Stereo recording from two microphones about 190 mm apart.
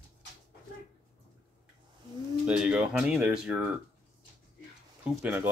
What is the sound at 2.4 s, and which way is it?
Speech, 5° right (ahead or behind).